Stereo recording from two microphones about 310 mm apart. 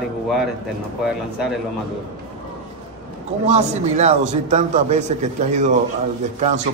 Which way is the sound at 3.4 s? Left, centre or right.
Right.